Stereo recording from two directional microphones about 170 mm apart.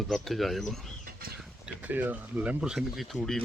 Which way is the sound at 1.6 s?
10° right (ahead or behind).